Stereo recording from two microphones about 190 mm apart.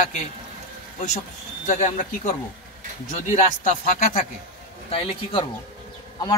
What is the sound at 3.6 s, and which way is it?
Speech, 40° left (ahead or behind).